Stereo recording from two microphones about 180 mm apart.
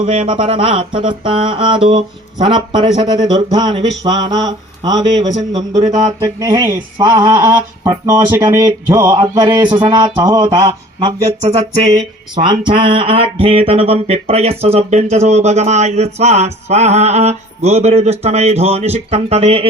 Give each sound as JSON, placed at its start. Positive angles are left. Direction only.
{"t": 0.0, "sound": "music", "side_deg": -30}
{"t": 10.7, "sound": "mantra", "side_deg": -25}